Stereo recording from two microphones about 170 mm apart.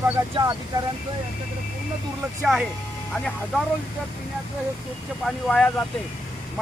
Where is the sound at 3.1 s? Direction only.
5° left (ahead or behind).